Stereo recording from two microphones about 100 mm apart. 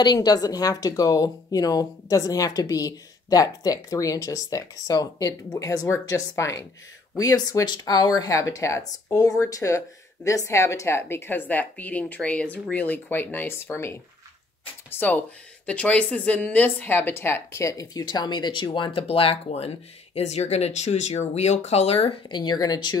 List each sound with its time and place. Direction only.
0.0 s speech: 45° left (ahead or behind); by 19.7 s 80° left
20.2 s speech: 90° left; by 22.2 s 70° left (ahead or behind)
22.3 s speech: 45° left (ahead or behind)